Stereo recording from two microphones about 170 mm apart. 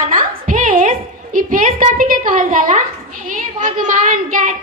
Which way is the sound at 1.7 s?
55° right (ahead or behind).